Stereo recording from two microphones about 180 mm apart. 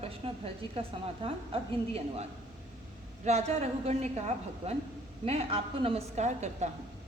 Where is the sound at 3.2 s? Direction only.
35° right (ahead or behind).